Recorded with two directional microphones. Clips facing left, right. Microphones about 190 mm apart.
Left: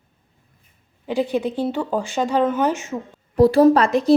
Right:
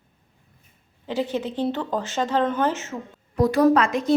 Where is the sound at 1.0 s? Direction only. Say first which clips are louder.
Left 4 dB; 15° left (ahead or behind).